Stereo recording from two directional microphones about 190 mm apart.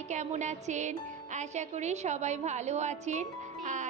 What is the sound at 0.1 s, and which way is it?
A woman's voice, 40° right (ahead or behind).